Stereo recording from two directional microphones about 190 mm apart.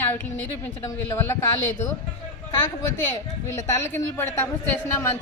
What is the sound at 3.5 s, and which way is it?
Speech, 15° left (ahead or behind).